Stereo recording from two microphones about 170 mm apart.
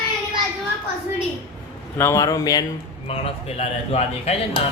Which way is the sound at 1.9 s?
15° left (ahead or behind).